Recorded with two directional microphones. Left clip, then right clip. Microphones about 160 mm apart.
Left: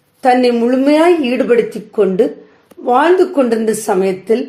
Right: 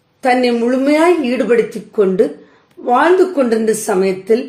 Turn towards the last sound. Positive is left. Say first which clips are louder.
# even
turn(degrees=30)  # may be behind; listen again after turning